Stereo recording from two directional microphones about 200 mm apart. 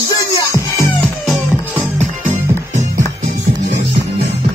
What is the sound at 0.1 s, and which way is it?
Music, 15° left (ahead or behind).